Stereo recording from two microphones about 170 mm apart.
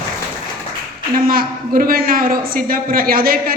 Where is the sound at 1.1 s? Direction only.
60° right (ahead or behind).